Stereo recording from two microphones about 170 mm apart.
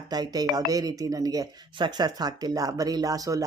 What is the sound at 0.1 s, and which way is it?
Speech, 25° right (ahead or behind).